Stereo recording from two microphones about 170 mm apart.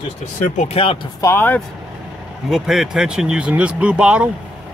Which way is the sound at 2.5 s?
Centre (ahead or behind).